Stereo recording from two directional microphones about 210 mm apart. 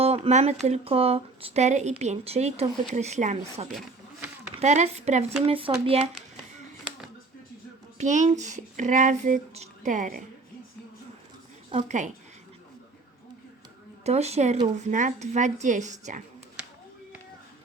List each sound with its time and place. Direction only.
0.0 s a sound: 30° right (ahead or behind)
0.7 s speech: 30° right (ahead or behind)
7.9 s speech: 35° right (ahead or behind)
11.7 s speech: 35° right (ahead or behind)
14.0 s speech: 30° right (ahead or behind)